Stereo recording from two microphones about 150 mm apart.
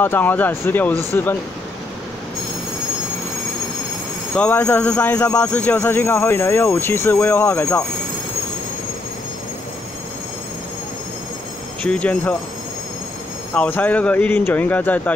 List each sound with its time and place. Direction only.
0.0 s speech: 15° left (ahead or behind)
4.4 s speech: 15° left (ahead or behind)
11.8 s speech: 10° left (ahead or behind)
13.5 s speech: 10° left (ahead or behind)